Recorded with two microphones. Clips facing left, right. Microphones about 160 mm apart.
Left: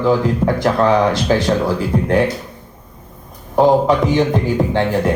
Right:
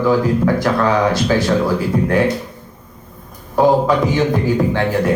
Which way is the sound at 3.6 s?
20° left (ahead or behind).